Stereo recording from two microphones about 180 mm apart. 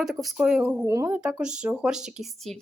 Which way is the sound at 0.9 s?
15° right (ahead or behind).